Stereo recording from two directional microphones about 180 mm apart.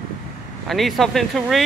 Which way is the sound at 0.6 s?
Centre (ahead or behind).